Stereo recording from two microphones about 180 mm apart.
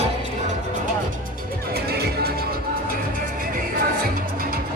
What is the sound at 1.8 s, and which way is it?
Music, 60° right (ahead or behind).